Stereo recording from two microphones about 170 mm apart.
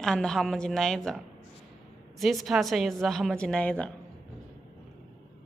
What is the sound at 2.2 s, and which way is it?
A woman's voice, centre (ahead or behind).